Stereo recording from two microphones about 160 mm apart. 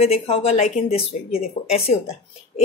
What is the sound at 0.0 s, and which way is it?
A woman's voice, 40° left (ahead or behind).